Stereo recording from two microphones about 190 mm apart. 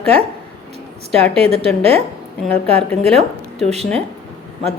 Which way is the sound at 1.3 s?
30° right (ahead or behind).